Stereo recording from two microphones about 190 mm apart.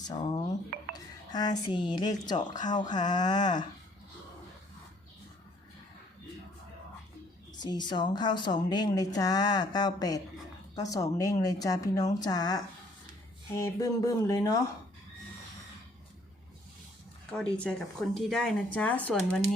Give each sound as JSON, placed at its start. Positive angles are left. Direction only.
{"t": 0.1, "sound": "speech", "side_deg": 20}
{"t": 7.6, "sound": "speech", "side_deg": 20}
{"t": 13.6, "sound": "speech", "side_deg": 15}
{"t": 17.3, "sound": "speech", "side_deg": 5}